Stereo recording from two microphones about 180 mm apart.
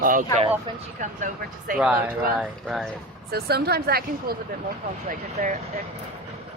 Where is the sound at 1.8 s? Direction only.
5° right (ahead or behind).